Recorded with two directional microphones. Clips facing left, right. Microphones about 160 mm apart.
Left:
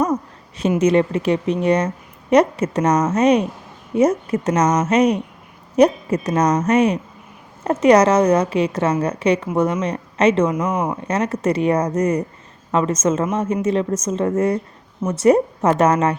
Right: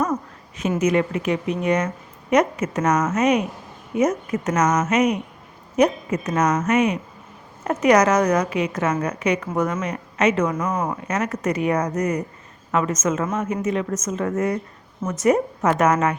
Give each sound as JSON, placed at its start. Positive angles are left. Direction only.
{"t": 0.8, "sound": "a woman's voice", "side_deg": 30}
{"t": 10.6, "sound": "speech", "side_deg": 15}
{"t": 11.1, "sound": "a woman's voice", "side_deg": 30}